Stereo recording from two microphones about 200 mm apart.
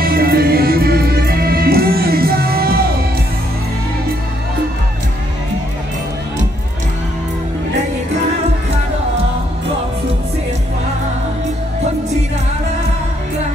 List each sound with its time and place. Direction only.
0.0 s music: 50° right (ahead or behind)